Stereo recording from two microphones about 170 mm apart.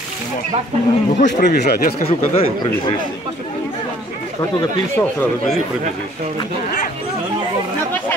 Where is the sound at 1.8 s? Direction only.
40° left (ahead or behind).